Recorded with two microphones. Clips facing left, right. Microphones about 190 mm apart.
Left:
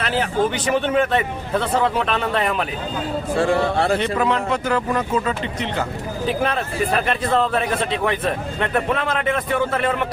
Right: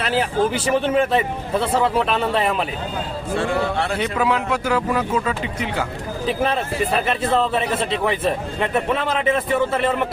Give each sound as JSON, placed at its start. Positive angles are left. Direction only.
{"t": 0.0, "sound": "a man's voice", "side_deg": -5}
{"t": 3.3, "sound": "speech", "side_deg": 35}
{"t": 4.0, "sound": "a man's voice", "side_deg": -5}